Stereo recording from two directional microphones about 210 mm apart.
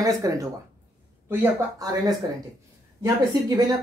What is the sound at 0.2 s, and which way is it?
Speech, 15° right (ahead or behind).